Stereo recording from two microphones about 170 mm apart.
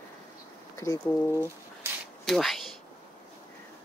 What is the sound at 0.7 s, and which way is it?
Speech, 15° left (ahead or behind).